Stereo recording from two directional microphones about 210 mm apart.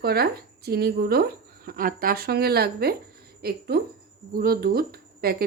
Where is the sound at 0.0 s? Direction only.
50° right (ahead or behind).